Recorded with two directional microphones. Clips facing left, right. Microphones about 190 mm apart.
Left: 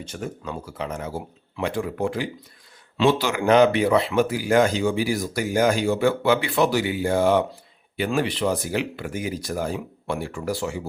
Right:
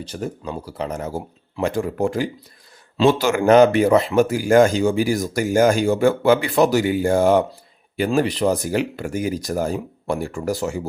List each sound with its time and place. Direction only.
0.0 s speech: 35° right (ahead or behind)